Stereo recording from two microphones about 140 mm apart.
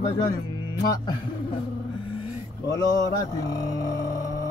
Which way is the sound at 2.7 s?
25° left (ahead or behind).